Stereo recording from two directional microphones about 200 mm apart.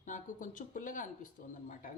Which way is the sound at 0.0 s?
40° left (ahead or behind).